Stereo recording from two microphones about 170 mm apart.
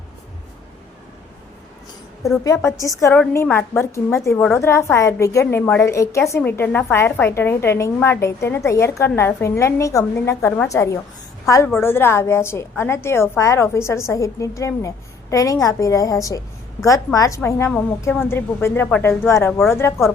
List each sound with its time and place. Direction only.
2.4 s a woman's voice: 15° left (ahead or behind)